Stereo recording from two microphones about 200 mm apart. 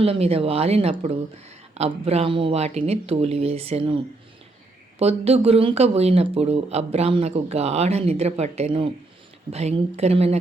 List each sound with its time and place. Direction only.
0.0 s speech: 30° right (ahead or behind)